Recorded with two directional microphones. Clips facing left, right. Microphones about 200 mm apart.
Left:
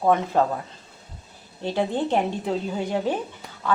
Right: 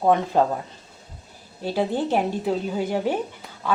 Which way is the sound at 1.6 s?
10° right (ahead or behind).